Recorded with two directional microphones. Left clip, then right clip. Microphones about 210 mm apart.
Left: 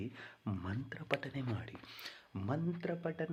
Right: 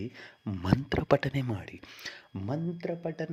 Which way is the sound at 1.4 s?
40° right (ahead or behind).